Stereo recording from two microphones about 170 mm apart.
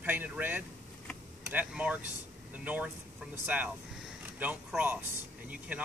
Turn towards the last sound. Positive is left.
turn(degrees=-10)  # may be behind; listen again after turning